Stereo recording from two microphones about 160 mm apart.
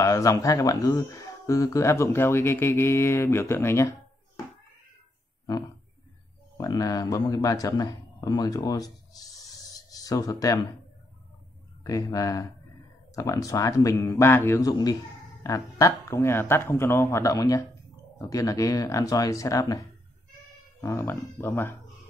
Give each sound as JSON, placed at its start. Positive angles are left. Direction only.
{"t": 0.0, "sound": "speech", "side_deg": 20}
{"t": 6.6, "sound": "a man's voice", "side_deg": 20}
{"t": 11.8, "sound": "a man's voice", "side_deg": 20}
{"t": 20.8, "sound": "speech", "side_deg": 15}